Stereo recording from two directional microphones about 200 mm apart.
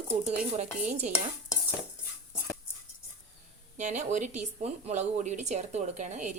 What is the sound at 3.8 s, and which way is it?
Speech, 35° right (ahead or behind).